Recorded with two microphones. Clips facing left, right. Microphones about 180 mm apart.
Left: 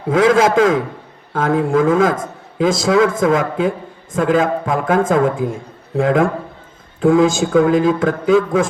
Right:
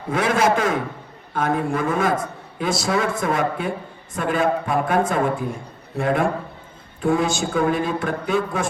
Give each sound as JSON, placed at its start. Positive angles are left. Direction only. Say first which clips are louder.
{"t": 0.1, "sound": "a man's voice", "louder": "left 7 dB", "side_deg": 90}